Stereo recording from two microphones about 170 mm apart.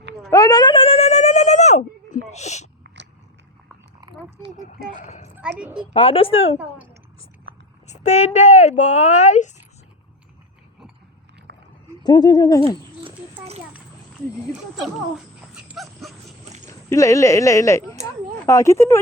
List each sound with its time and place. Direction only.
0.3 s a sound: 20° left (ahead or behind); by 2.6 s 40° left (ahead or behind)
2.8 s biting: 90° right
5.5 s a woman's voice: 5° right (ahead or behind)
5.9 s speech: 30° left (ahead or behind)
7.9 s speech: 40° left (ahead or behind)
11.5 s a sound: 90° right
12.0 s speech: 25° left (ahead or behind)
13.1 s a sound: 35° right (ahead or behind)
15.5 s dog: 5° right (ahead or behind)
16.6 s speech: 20° left (ahead or behind)